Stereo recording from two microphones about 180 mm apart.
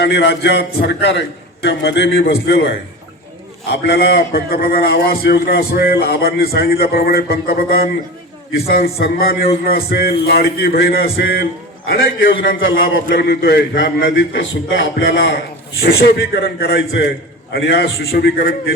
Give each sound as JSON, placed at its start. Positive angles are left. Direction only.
{"t": 0.0, "sound": "a man's voice", "side_deg": 75}
{"t": 12.6, "sound": "a man's voice", "side_deg": 90}
{"t": 13.1, "sound": "a man's voice", "side_deg": 65}